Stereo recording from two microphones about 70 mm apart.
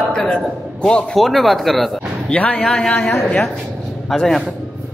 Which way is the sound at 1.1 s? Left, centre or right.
Centre.